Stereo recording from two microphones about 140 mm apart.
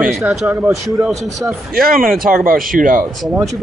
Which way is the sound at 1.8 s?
90° right.